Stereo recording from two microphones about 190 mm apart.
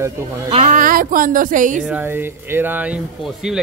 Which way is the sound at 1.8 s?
10° right (ahead or behind).